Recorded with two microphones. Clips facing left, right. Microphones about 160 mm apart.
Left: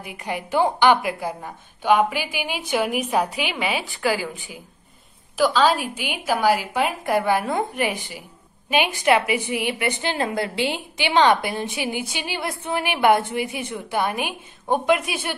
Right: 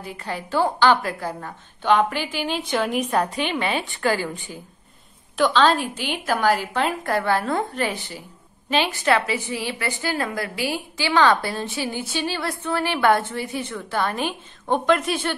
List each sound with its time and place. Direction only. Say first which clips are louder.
0.0 s a woman's voice: left 1 dB; 15° left (ahead or behind)